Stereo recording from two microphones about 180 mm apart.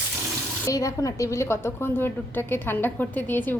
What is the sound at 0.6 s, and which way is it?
A woman's voice, 20° left (ahead or behind).